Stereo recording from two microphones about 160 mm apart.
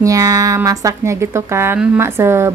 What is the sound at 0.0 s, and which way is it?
A woman's voice, 20° right (ahead or behind).